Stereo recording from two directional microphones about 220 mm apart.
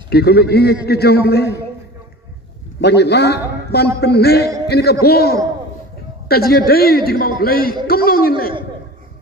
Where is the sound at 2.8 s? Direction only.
50° left (ahead or behind).